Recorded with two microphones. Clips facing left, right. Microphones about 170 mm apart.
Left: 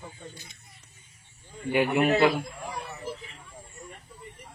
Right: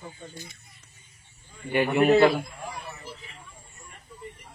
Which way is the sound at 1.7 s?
5° left (ahead or behind).